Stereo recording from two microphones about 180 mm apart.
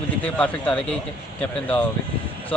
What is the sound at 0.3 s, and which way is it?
A man's voice, 5° left (ahead or behind).